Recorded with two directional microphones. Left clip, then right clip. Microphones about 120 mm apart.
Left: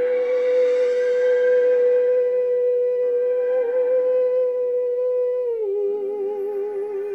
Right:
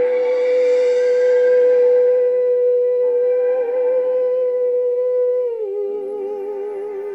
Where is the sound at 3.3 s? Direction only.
30° right (ahead or behind).